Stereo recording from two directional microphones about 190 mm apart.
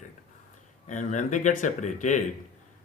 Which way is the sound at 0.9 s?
40° left (ahead or behind).